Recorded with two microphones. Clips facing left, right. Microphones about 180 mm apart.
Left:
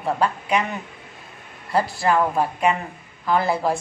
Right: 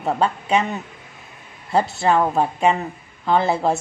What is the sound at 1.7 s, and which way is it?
A woman's voice, 25° right (ahead or behind).